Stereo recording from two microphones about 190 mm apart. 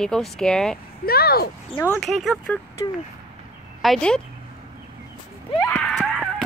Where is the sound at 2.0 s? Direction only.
Centre (ahead or behind).